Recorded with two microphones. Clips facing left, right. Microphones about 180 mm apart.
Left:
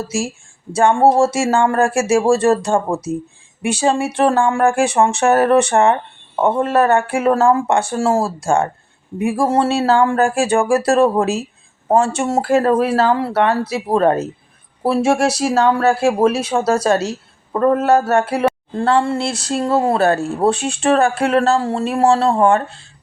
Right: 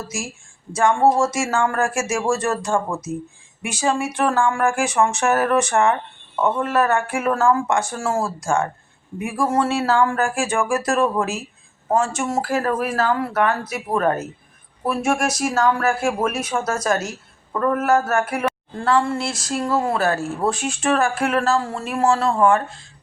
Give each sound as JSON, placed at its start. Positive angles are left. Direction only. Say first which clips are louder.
{"t": 0.7, "sound": "speech", "louder": "left 4 dB", "side_deg": 30}